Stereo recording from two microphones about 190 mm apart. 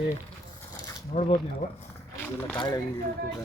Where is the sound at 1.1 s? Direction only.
35° left (ahead or behind).